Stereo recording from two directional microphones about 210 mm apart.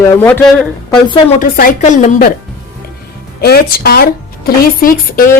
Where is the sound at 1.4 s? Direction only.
40° left (ahead or behind).